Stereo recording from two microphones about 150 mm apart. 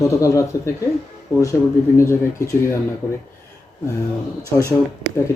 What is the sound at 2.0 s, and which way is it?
Speech, 20° left (ahead or behind).